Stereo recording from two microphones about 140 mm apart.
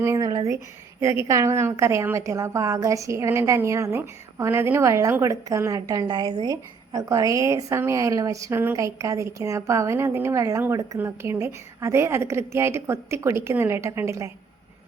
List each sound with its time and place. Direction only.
0.0 s a woman's voice: 20° right (ahead or behind)